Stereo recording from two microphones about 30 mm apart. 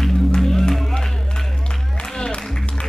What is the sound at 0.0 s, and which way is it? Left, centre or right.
Music, centre.